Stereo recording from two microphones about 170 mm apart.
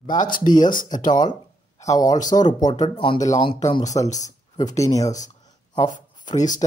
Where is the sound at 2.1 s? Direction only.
45° left (ahead or behind).